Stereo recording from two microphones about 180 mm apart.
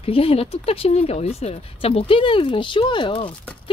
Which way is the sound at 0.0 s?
30° left (ahead or behind).